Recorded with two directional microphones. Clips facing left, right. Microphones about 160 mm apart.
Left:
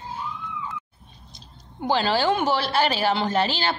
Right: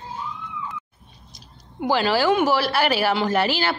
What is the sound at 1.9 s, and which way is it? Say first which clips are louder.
A woman's voice: right 2 dB; 25° left (ahead or behind).